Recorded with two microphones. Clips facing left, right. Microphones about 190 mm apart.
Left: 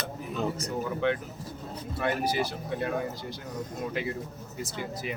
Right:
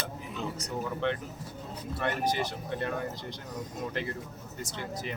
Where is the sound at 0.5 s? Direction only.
Centre (ahead or behind).